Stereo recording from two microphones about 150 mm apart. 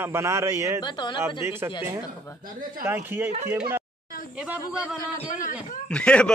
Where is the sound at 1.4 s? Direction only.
15° right (ahead or behind).